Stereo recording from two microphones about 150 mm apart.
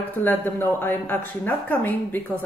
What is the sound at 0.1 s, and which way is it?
Speech, 10° left (ahead or behind).